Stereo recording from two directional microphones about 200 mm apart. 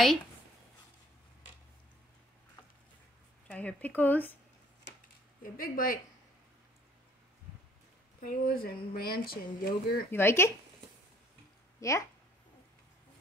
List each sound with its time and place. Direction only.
3.4 s speech: 5° left (ahead or behind)
5.4 s speech: 45° left (ahead or behind)
8.2 s speech: 45° left (ahead or behind)
10.1 s speech: 10° left (ahead or behind)
11.8 s speech: 15° left (ahead or behind)